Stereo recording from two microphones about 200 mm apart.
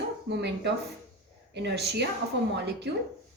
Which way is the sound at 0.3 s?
60° right (ahead or behind).